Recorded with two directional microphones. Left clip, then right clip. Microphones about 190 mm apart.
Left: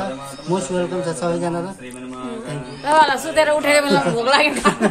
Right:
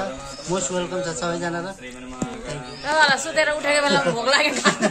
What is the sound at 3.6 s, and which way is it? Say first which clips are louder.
Speech: left 4 dB; 25° left (ahead or behind).